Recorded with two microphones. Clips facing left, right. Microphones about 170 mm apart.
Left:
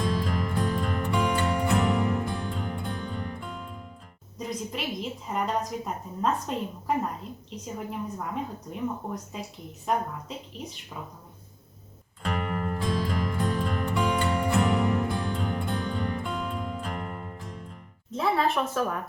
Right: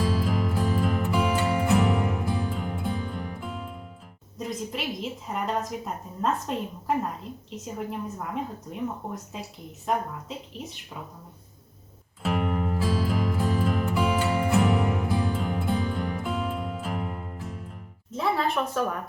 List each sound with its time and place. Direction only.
0.0 s music: 5° right (ahead or behind)
4.4 s a woman's voice: centre (ahead or behind)
9.3 s a woman's voice: centre (ahead or behind)
12.2 s music: 5° right (ahead or behind)
18.1 s speech: centre (ahead or behind)